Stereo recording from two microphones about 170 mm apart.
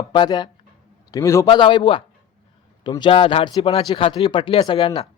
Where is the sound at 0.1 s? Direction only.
25° left (ahead or behind).